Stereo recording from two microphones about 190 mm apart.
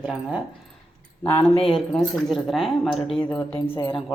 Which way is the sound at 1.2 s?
15° left (ahead or behind).